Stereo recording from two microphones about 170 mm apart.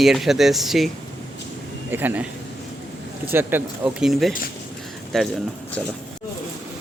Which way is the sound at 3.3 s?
10° right (ahead or behind).